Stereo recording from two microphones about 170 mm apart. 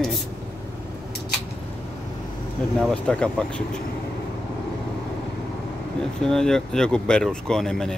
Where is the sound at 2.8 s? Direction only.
5° left (ahead or behind).